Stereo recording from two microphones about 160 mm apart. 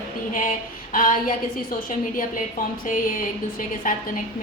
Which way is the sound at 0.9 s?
60° left (ahead or behind).